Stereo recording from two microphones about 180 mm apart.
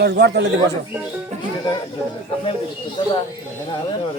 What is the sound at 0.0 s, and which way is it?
Speech, 70° right (ahead or behind).